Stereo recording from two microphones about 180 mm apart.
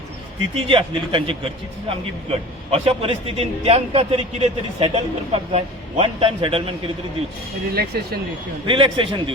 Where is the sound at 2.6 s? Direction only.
35° right (ahead or behind).